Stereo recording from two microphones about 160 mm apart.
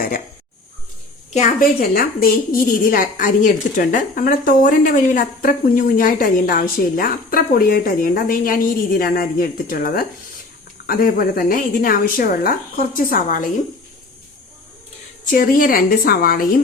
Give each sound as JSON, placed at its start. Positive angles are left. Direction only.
{"t": 1.3, "sound": "a woman's voice", "side_deg": 45}
{"t": 1.8, "sound": "a woman's voice", "side_deg": 70}
{"t": 15.3, "sound": "a woman's voice", "side_deg": 60}